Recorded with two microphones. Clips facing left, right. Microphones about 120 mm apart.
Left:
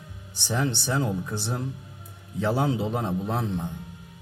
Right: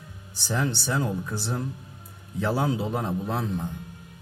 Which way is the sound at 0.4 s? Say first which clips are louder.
Even; 20° left (ahead or behind).